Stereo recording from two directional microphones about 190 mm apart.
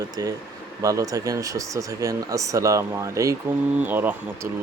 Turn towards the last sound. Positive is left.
turn(degrees=-10)  # may be behind; listen again after turning